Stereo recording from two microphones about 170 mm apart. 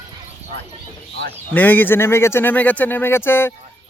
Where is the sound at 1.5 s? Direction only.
10° left (ahead or behind).